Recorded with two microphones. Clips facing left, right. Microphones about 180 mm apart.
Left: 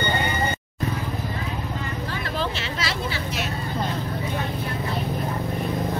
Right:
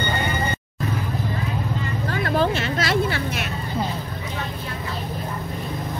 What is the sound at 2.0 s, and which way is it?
Vehicle, 50° right (ahead or behind).